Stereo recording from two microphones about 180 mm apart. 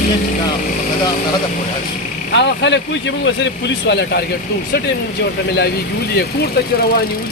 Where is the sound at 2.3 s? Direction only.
80° left.